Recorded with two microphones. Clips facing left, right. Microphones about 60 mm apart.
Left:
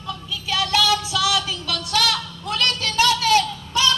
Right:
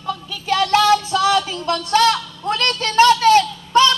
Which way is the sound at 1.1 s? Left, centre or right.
Right.